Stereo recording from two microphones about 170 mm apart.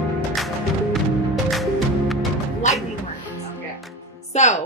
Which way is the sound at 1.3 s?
Centre (ahead or behind).